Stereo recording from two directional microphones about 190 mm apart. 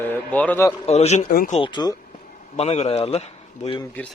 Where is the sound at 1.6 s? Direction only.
25° left (ahead or behind).